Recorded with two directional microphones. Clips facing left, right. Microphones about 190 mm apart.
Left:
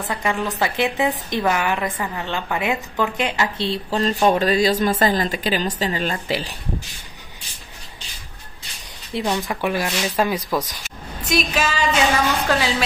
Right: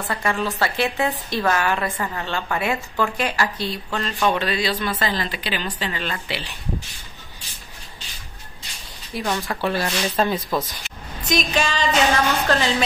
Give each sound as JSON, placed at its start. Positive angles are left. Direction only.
{"t": 0.1, "sound": "a woman's voice", "side_deg": 15}
{"t": 9.1, "sound": "a woman's voice", "side_deg": 20}